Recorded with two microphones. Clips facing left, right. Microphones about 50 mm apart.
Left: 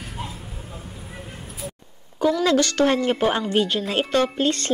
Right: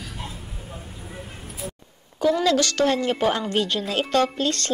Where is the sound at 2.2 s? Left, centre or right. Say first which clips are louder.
Even; centre.